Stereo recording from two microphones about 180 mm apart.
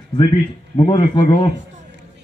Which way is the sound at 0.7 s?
25° left (ahead or behind).